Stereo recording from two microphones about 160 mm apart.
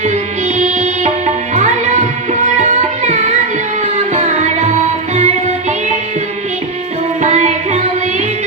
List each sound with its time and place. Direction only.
0.0 s music: 45° right (ahead or behind)
1.5 s tabla: 45° right (ahead or behind)
2.6 s music: 45° right (ahead or behind)
7.2 s music: 45° right (ahead or behind)